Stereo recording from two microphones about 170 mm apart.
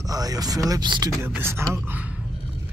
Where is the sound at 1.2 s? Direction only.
15° right (ahead or behind).